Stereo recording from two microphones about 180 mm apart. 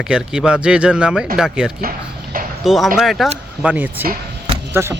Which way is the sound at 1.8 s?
50° right (ahead or behind).